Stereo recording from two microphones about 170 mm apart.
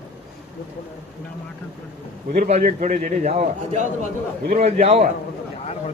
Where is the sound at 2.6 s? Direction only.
50° right (ahead or behind).